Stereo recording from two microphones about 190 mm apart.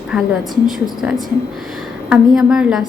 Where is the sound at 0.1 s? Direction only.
Centre (ahead or behind).